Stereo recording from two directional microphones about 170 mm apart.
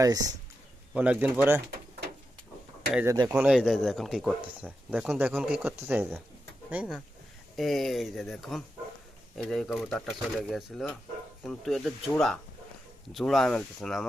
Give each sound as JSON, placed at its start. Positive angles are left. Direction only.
{"t": 0.0, "sound": "speech", "side_deg": -20}
{"t": 0.9, "sound": "speech", "side_deg": -10}
{"t": 2.9, "sound": "speech", "side_deg": -10}